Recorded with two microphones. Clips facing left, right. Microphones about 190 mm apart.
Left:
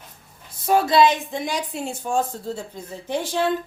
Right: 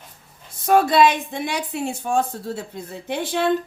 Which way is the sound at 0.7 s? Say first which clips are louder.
Right 1 dB; 55° right (ahead or behind).